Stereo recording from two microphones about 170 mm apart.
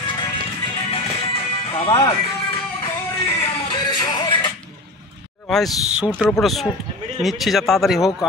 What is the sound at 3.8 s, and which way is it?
Music, 25° left (ahead or behind).